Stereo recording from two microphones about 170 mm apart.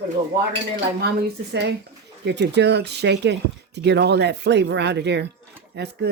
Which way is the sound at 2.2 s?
85° right.